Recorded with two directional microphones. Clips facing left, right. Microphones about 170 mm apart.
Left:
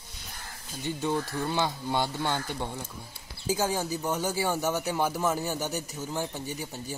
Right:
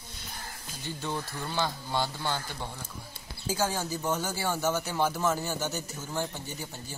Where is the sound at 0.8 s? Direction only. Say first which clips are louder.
Left 6 dB; 15° left (ahead or behind).